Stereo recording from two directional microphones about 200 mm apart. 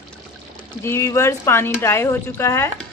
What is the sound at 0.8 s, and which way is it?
Speech, 15° left (ahead or behind).